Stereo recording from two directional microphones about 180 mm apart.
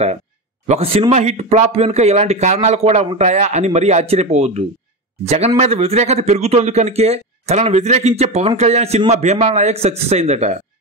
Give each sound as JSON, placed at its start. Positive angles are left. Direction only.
{"t": 0.7, "sound": "a man's voice", "side_deg": -35}